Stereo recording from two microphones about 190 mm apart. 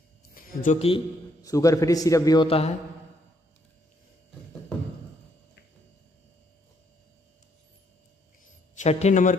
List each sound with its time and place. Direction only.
0.3 s a sound: 45° left (ahead or behind)
0.7 s a man's voice: 30° left (ahead or behind)
1.4 s a man's voice: 20° left (ahead or behind)
8.7 s a man's voice: 40° left (ahead or behind)